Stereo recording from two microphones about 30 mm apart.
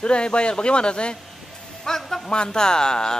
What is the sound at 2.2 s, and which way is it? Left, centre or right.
Speech, left.